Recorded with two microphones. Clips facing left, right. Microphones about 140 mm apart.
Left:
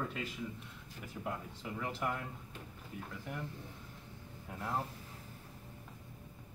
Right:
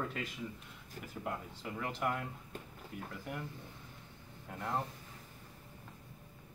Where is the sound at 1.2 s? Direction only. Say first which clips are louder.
Even; centre (ahead or behind).